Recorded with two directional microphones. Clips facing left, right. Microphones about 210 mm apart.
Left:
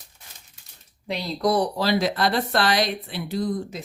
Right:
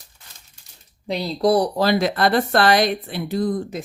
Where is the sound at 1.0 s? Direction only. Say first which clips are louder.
Right 4 dB; 30° right (ahead or behind).